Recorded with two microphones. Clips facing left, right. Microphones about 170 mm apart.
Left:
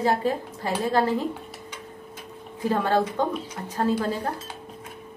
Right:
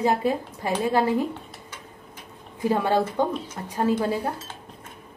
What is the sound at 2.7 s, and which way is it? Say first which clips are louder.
A woman's voice: even; 15° right (ahead or behind).